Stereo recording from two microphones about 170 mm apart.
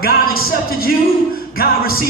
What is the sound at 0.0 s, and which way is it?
Speech, 60° left (ahead or behind).